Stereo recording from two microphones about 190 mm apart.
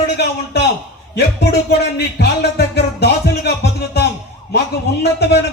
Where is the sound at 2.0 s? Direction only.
60° left (ahead or behind).